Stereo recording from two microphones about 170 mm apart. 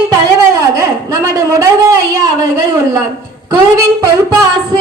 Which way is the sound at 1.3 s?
20° right (ahead or behind).